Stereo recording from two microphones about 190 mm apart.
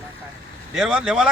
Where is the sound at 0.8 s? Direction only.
5° right (ahead or behind).